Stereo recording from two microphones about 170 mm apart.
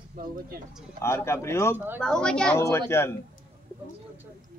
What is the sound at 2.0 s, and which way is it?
Speech, 5° left (ahead or behind).